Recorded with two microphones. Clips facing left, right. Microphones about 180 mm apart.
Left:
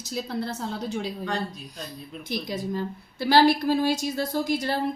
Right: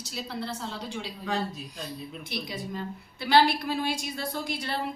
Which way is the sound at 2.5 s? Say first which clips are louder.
Left 6 dB; 40° left (ahead or behind).